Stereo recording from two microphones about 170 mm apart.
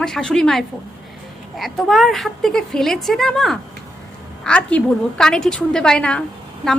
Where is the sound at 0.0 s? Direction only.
5° left (ahead or behind).